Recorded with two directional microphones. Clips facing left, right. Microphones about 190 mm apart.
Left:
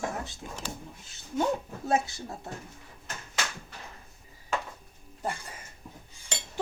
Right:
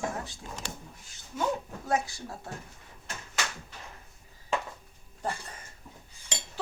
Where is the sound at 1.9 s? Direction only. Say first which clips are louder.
Left 2 dB; 20° left (ahead or behind).